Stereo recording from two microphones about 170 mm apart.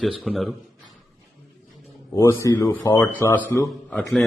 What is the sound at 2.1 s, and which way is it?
A man's voice, 15° left (ahead or behind).